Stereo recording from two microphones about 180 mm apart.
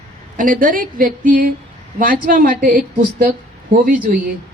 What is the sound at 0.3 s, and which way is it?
A woman's voice, 50° right (ahead or behind).